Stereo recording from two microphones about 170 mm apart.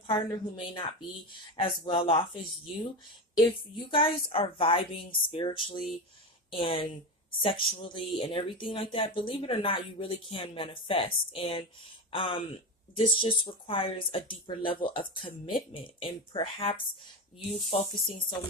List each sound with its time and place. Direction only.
0.1 s speech: 30° left (ahead or behind)
3.3 s speech: 30° left (ahead or behind)